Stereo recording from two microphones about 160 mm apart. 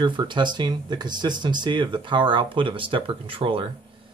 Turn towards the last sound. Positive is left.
turn(degrees=-35)  # may be behind; listen again after turning